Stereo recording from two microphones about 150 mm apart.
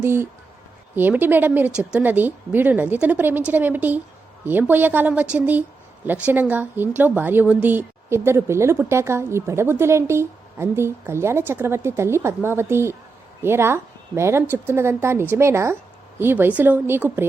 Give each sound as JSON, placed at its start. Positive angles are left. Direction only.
{"t": 0.0, "sound": "speech", "side_deg": -15}